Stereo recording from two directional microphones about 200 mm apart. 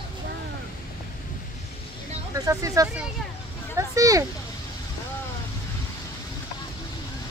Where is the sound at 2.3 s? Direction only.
15° right (ahead or behind).